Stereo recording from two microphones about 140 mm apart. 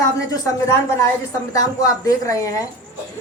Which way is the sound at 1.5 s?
25° left (ahead or behind).